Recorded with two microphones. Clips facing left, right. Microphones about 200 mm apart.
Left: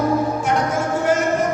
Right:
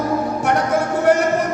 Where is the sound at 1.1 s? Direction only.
65° right (ahead or behind).